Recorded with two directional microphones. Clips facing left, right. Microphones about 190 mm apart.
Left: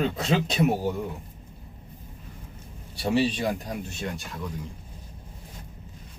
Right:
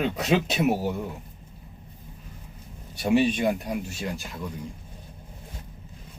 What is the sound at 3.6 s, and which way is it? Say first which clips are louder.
Speech: right 2 dB; 5° right (ahead or behind).